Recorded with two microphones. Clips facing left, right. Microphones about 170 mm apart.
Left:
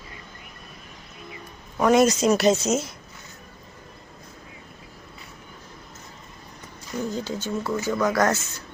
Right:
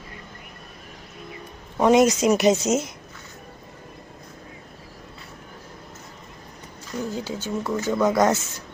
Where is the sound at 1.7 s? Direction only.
20° right (ahead or behind).